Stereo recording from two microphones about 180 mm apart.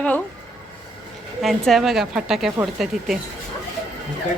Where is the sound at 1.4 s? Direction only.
Centre (ahead or behind).